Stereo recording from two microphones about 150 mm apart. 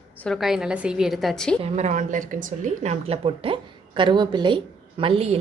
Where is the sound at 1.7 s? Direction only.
50° right (ahead or behind).